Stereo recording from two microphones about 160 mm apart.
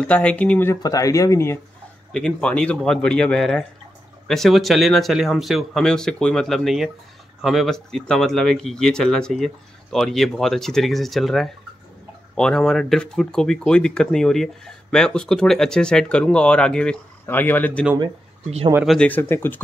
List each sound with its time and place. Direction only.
0.0 s speech: 5° left (ahead or behind)
2.1 s speech: 5° left (ahead or behind)
18.9 s speech: 10° left (ahead or behind)